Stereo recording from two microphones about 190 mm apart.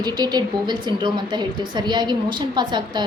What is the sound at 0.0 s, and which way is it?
Speech, 20° right (ahead or behind).